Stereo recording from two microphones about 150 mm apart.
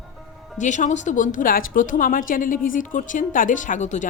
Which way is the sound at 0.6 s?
55° left (ahead or behind).